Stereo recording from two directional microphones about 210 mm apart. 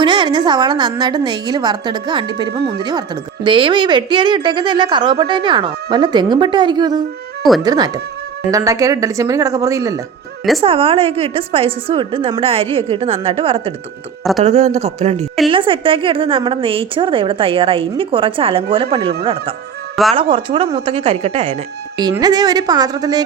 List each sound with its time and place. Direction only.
0.0 s a woman's voice: 20° right (ahead or behind)
10.6 s a woman's voice: 25° right (ahead or behind)